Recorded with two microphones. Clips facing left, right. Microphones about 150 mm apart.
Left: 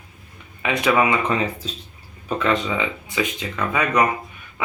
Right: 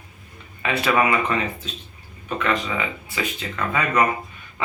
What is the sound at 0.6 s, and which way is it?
Speech, 15° left (ahead or behind).